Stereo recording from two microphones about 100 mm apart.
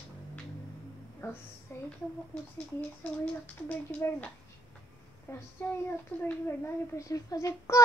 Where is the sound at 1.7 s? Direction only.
25° left (ahead or behind).